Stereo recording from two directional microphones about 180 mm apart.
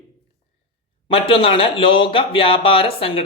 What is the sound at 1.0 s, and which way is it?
Speech, 30° left (ahead or behind).